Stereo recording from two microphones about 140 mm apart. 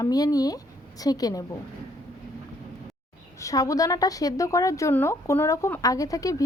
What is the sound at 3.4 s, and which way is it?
A woman's voice, 25° left (ahead or behind).